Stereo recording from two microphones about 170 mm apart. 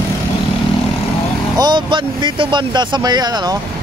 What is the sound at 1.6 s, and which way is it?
Speech, 25° right (ahead or behind).